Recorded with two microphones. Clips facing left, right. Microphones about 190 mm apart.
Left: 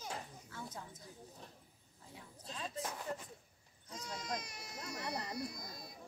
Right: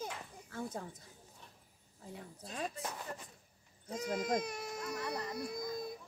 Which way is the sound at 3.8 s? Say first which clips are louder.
Right 10 dB; 55° right (ahead or behind).